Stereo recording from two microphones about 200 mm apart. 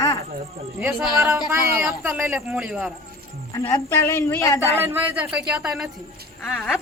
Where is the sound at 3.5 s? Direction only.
20° left (ahead or behind).